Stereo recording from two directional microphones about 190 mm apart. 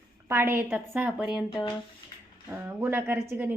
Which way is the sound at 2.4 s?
10° right (ahead or behind).